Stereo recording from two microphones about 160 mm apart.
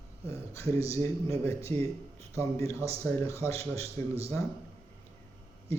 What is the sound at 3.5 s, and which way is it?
Speech, 40° right (ahead or behind).